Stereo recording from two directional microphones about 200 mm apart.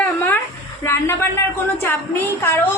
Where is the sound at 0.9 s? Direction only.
10° left (ahead or behind).